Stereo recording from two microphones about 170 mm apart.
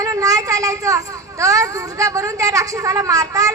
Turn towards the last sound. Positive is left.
turn(degrees=-20)  # may be behind; listen again after turning